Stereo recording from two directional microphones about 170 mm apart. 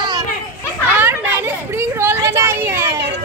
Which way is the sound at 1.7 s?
15° right (ahead or behind).